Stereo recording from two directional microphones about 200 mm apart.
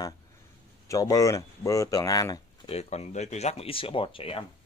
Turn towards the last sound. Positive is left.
turn(degrees=25)  # may be behind; listen again after turning